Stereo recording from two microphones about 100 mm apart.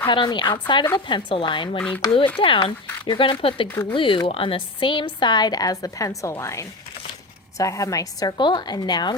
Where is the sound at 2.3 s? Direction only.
60° left (ahead or behind).